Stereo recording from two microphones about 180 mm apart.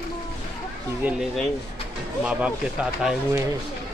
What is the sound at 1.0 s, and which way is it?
Speech, centre (ahead or behind).